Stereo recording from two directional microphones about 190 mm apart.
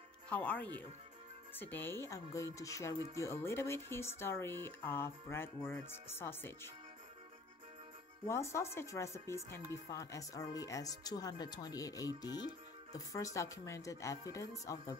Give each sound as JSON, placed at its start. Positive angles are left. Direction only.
{"t": 0.3, "sound": "speech", "side_deg": 5}
{"t": 8.3, "sound": "speech", "side_deg": 15}